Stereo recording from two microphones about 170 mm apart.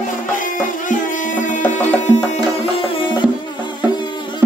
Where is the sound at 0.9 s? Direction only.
50° left (ahead or behind).